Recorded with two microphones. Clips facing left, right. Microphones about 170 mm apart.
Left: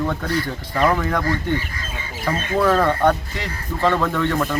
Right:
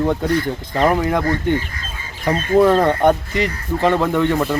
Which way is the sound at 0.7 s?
25° right (ahead or behind).